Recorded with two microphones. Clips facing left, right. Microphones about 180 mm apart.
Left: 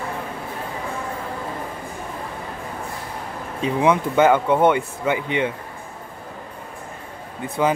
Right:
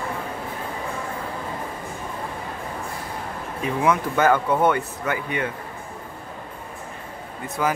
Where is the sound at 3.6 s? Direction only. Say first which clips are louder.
Left 3 dB; 20° left (ahead or behind).